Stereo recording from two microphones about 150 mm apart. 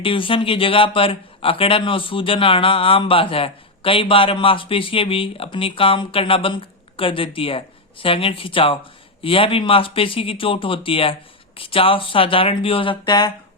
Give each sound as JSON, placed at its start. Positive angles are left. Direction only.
{"t": 0.0, "sound": "a man's voice", "side_deg": 35}